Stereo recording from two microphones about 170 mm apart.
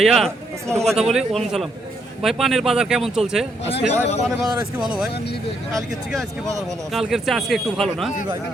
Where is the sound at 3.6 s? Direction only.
35° left (ahead or behind).